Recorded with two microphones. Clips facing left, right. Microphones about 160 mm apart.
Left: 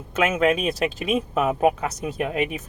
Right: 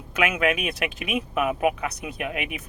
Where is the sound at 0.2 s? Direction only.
30° left (ahead or behind).